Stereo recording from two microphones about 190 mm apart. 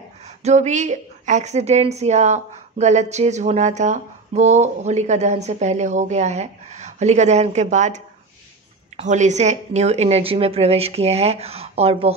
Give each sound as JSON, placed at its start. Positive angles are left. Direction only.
{"t": 0.4, "sound": "a woman's voice", "side_deg": -35}